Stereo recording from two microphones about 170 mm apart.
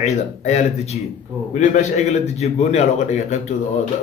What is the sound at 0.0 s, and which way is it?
A man's voice, 40° left (ahead or behind).